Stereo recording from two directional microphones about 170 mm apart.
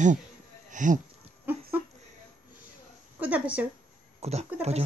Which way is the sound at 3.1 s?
10° right (ahead or behind).